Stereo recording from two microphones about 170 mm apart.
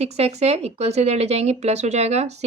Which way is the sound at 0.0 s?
40° right (ahead or behind).